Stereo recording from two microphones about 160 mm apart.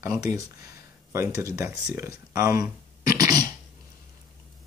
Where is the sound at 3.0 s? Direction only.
20° right (ahead or behind).